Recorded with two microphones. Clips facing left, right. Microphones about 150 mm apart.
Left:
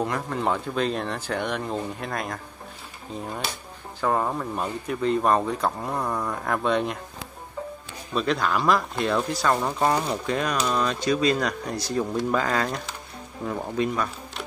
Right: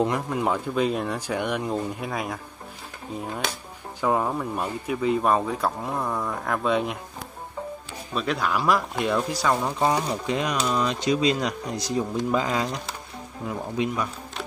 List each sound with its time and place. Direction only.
0.0 s speech: 20° right (ahead or behind)
0.4 s speech: 10° right (ahead or behind)
4.0 s speech: 5° right (ahead or behind)
8.1 s speech: 5° right (ahead or behind)